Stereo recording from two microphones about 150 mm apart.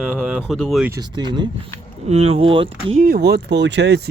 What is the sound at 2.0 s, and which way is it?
Speech, 40° right (ahead or behind).